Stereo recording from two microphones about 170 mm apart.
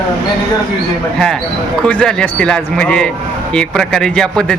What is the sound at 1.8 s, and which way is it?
A man's voice, 5° left (ahead or behind).